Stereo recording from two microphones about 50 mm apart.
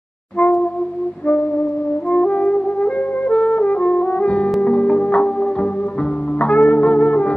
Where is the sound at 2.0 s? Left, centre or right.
Left.